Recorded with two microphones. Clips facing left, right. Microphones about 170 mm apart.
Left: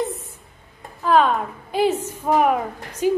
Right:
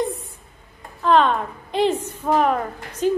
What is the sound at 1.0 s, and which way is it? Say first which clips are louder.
Speech: even; 5° left (ahead or behind).